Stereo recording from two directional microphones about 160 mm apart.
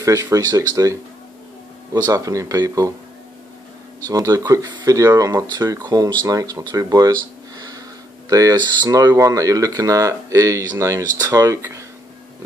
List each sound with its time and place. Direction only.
0.0 s speech: 20° right (ahead or behind)
2.0 s speech: 25° right (ahead or behind)
4.1 s speech: 20° right (ahead or behind)